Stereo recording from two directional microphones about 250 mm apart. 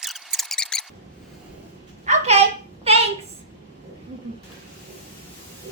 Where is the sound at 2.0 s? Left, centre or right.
Right.